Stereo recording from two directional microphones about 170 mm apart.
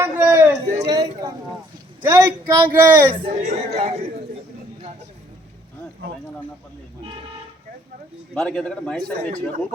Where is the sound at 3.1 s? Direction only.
35° right (ahead or behind).